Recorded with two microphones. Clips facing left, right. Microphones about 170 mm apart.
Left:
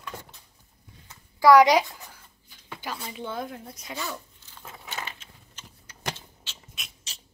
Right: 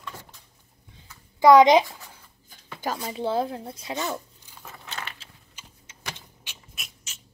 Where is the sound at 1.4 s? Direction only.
20° right (ahead or behind).